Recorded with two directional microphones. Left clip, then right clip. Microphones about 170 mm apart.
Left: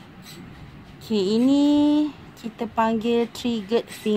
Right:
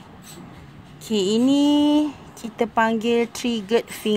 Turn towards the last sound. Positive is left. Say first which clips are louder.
# right 2 dB
turn(degrees=-45)  # may be behind; listen again after turning